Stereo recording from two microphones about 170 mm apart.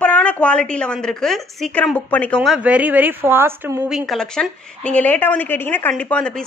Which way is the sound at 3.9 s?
Centre (ahead or behind).